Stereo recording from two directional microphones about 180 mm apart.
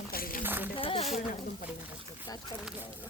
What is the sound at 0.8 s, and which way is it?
Speech, 30° left (ahead or behind).